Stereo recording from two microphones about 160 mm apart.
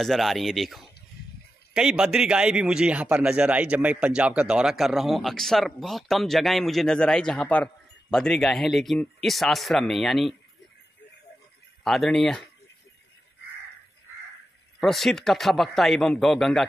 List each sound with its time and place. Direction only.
0.0 s a man's voice: centre (ahead or behind)
11.8 s a man's voice: centre (ahead or behind)
14.8 s a man's voice: centre (ahead or behind)